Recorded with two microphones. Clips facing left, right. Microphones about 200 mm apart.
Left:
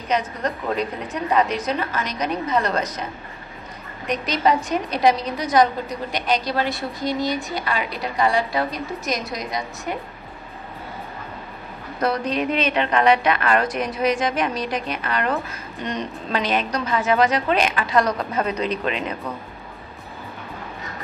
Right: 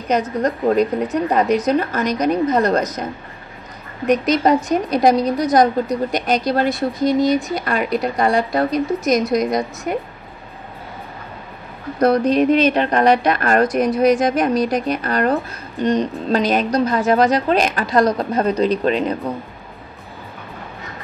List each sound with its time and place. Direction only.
0.1 s speech: 45° right (ahead or behind)
4.1 s a woman's voice: 45° right (ahead or behind)
12.0 s a woman's voice: 40° right (ahead or behind)